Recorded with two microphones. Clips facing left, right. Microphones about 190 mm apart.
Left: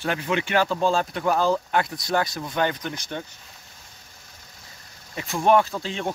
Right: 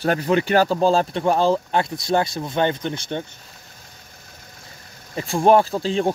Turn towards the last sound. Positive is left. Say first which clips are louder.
# right 5 dB
turn(degrees=-35)  # may be behind; listen again after turning